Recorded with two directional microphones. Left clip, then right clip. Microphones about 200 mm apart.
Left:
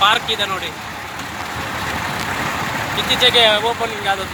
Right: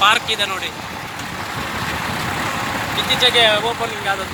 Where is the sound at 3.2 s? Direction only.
15° left (ahead or behind).